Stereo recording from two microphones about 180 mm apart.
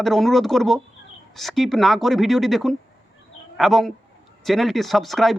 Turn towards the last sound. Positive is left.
turn(degrees=0)  # may be behind; listen again after turning